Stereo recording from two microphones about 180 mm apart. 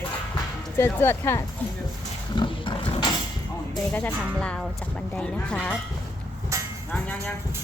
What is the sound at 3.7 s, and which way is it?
Speech, 5° left (ahead or behind).